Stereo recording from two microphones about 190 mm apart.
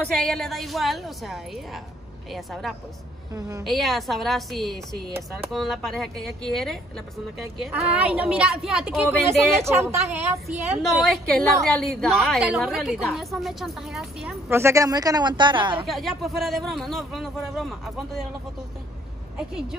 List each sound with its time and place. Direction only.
0.0 s a woman's voice: 5° left (ahead or behind)
3.3 s a woman's voice: 15° right (ahead or behind)
3.6 s a woman's voice: centre (ahead or behind)
9.7 s a woman's voice: 15° right (ahead or behind)
10.8 s a woman's voice: centre (ahead or behind)
14.5 s a woman's voice: 15° right (ahead or behind)
15.9 s a woman's voice: centre (ahead or behind)
19.3 s a woman's voice: 5° right (ahead or behind)